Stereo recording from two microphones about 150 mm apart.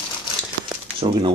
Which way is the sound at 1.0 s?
35° right (ahead or behind).